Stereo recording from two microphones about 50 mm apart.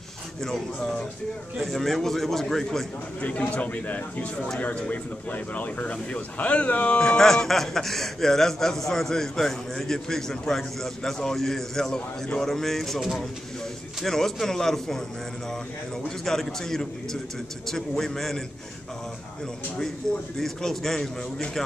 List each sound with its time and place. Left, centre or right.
0.4 s a man's voice: centre
3.2 s speech: left
7.2 s a man's voice: centre
14.0 s a man's voice: centre
16.3 s a man's voice: centre
20.3 s a man's voice: centre